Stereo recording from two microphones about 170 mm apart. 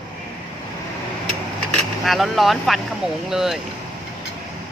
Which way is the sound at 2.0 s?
Centre (ahead or behind).